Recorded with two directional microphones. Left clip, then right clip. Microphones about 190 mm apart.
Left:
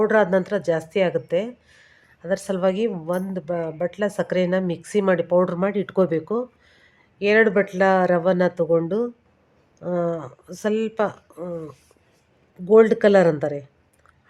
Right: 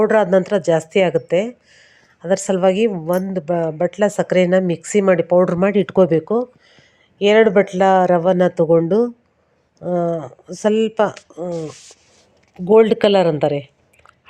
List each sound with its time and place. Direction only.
0.0 s speech: 15° right (ahead or behind)